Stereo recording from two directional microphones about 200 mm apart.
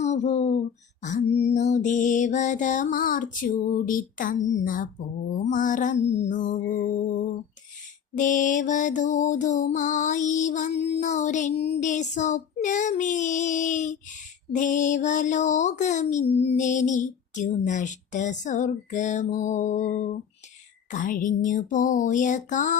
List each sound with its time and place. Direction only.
0.0 s a sound: 35° left (ahead or behind)
1.0 s child singing: 35° left (ahead or behind)
8.1 s child singing: 40° left (ahead or behind)